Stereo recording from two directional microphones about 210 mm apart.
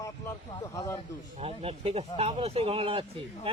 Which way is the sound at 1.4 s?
30° right (ahead or behind).